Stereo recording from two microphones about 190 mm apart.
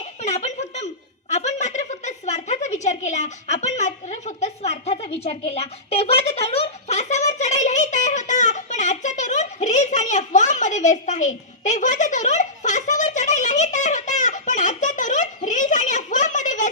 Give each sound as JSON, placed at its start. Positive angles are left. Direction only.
{"t": 0.2, "sound": "chuckle", "side_deg": 35}